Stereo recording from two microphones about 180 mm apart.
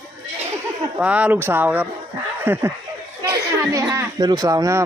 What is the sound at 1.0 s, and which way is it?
A man's voice, 5° right (ahead or behind).